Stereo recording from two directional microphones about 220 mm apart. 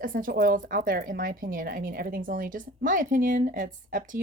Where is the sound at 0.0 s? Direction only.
40° right (ahead or behind).